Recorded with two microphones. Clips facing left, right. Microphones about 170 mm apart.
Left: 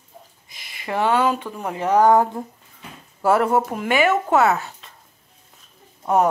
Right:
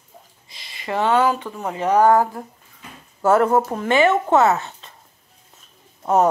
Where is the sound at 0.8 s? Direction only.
10° left (ahead or behind).